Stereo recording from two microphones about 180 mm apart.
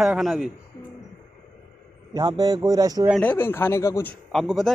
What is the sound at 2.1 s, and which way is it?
Speech, 20° right (ahead or behind).